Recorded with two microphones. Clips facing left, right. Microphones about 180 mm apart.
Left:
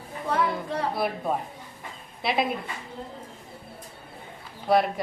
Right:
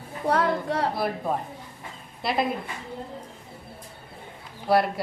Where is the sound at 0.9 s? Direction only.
Centre (ahead or behind).